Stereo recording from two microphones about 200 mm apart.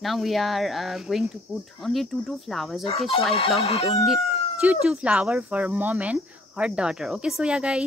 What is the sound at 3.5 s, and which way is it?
Speech, 30° left (ahead or behind).